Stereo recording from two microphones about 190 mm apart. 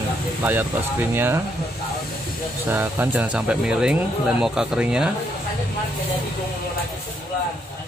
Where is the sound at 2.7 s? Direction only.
10° right (ahead or behind).